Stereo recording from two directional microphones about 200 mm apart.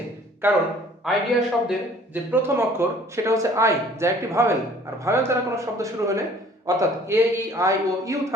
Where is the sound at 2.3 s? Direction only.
10° right (ahead or behind).